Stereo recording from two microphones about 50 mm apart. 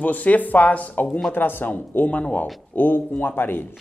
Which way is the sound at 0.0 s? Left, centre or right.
Left.